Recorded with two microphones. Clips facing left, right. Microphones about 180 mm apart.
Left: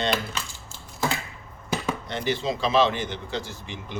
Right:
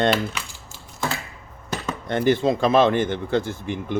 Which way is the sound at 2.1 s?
50° right (ahead or behind).